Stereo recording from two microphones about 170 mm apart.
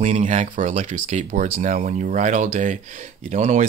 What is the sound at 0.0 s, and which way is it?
Speech, 45° right (ahead or behind).